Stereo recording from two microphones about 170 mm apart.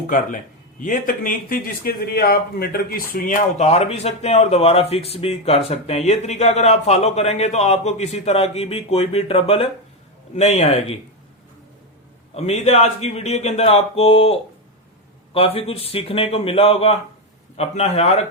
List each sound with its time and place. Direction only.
0.1 s a man's voice: 50° left (ahead or behind)
3.6 s a man's voice: 40° left (ahead or behind)
12.3 s a man's voice: 40° left (ahead or behind)